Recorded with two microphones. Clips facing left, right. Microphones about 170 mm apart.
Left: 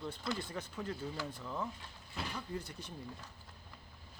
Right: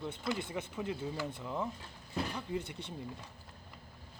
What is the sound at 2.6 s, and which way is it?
Speech, 25° right (ahead or behind).